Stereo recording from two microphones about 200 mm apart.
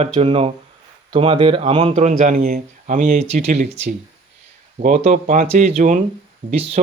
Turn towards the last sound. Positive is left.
turn(degrees=-35)  # may be behind; listen again after turning